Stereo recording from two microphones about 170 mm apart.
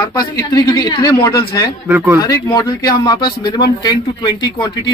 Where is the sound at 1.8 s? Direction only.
10° right (ahead or behind).